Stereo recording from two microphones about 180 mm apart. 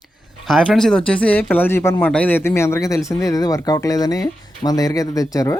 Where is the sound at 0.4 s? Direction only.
Centre (ahead or behind).